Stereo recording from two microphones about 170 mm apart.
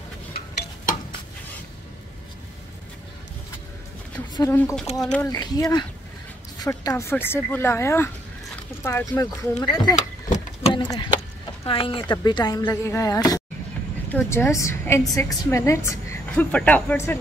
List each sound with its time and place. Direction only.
4.4 s a woman's voice: 15° left (ahead or behind)
5.0 s speech: 5° left (ahead or behind)
5.3 s a woman's voice: 20° left (ahead or behind)
9.9 s vehicle: 45° left (ahead or behind)
10.7 s a woman's voice: 30° left (ahead or behind)